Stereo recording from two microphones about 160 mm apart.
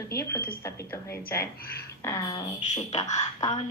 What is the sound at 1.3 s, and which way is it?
A woman's voice, 20° left (ahead or behind).